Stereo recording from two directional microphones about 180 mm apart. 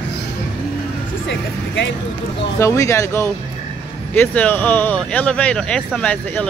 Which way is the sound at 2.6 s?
15° left (ahead or behind).